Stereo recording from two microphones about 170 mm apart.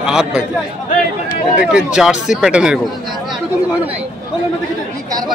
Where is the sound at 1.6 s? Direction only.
5° right (ahead or behind).